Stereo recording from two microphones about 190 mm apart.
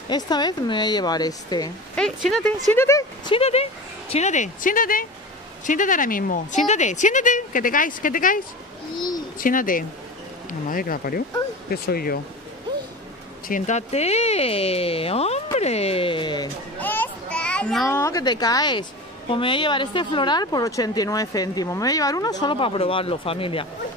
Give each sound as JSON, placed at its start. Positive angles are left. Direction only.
{"t": 0.1, "sound": "speech", "side_deg": 20}
{"t": 2.0, "sound": "speech", "side_deg": 5}
{"t": 2.7, "sound": "speech", "side_deg": 15}
{"t": 3.3, "sound": "speech", "side_deg": 35}
{"t": 8.9, "sound": "speech", "side_deg": 20}
{"t": 9.4, "sound": "speech", "side_deg": 45}
{"t": 13.5, "sound": "speech", "side_deg": 40}
{"t": 16.8, "sound": "children playing", "side_deg": 10}
{"t": 17.8, "sound": "speech", "side_deg": 15}